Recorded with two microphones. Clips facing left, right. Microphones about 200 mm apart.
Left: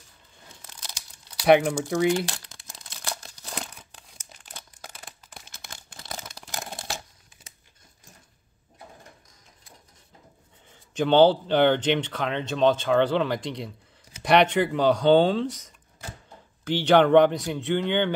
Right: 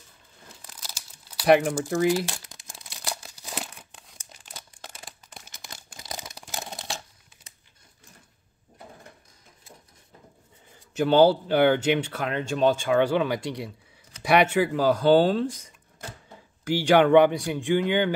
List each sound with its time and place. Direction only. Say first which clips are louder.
0.7 s crumpling: left 1 dB; 5° right (ahead or behind)
2.3 s crumpling: right 1 dB; 15° right (ahead or behind); by 5.4 s centre (ahead or behind)
5.9 s a sound: even; 15° right (ahead or behind)
6.4 s camera: even; centre (ahead or behind)
11.0 s speech: even; 10° right (ahead or behind)